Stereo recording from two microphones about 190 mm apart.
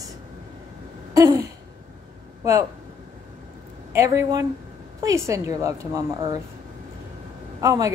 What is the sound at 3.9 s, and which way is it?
A woman's voice, 15° right (ahead or behind).